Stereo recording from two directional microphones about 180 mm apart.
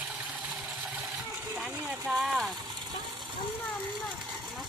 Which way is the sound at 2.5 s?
20° right (ahead or behind).